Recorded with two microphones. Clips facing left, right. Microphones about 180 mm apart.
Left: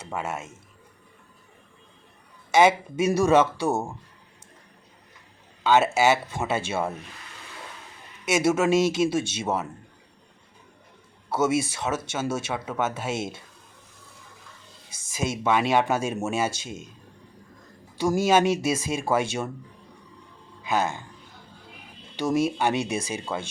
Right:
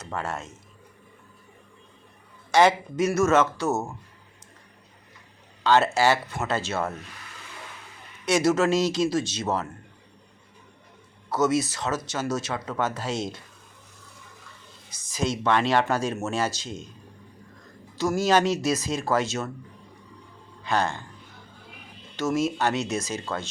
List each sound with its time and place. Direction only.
0.0 s speech: 5° left (ahead or behind)
2.5 s speech: 5° left (ahead or behind)
5.6 s speech: 5° left (ahead or behind)
8.2 s speech: 5° left (ahead or behind)
11.3 s speech: 10° left (ahead or behind)
14.8 s a sound: 25° left (ahead or behind)
15.3 s speech: 10° left (ahead or behind)
17.9 s speech: 10° left (ahead or behind)
20.7 s a man's voice: 5° left (ahead or behind)
22.5 s speech: 10° left (ahead or behind)